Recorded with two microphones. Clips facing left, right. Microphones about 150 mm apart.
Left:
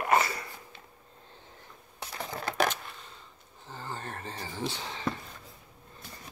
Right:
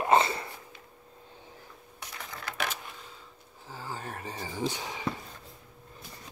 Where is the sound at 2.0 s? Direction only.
30° left (ahead or behind).